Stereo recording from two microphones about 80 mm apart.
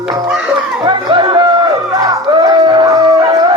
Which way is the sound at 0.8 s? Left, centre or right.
Right.